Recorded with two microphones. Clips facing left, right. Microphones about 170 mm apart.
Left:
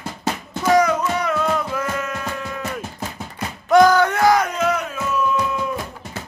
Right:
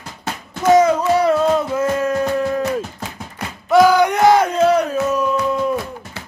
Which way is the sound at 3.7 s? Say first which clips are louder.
Right 1 dB; 10° right (ahead or behind).